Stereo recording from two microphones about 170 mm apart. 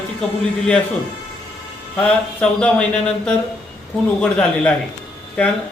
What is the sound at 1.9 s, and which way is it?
A man's voice, 5° left (ahead or behind).